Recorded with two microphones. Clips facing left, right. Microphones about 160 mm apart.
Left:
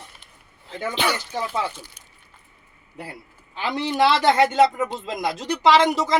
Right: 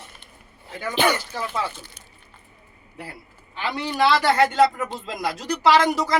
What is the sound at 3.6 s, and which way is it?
A man's voice, 25° left (ahead or behind).